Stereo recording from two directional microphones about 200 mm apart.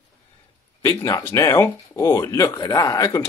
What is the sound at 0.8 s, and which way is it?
Speech, 15° left (ahead or behind).